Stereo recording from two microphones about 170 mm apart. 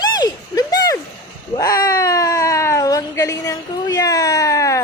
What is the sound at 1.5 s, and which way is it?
Cat, 20° left (ahead or behind).